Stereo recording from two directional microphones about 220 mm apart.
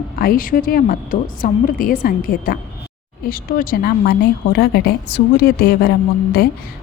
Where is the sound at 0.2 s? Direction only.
40° left (ahead or behind).